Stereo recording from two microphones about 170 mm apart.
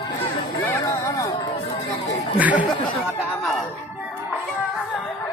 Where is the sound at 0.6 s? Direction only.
15° left (ahead or behind).